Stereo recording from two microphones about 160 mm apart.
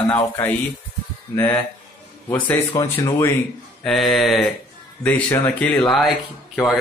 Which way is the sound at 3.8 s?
Centre (ahead or behind).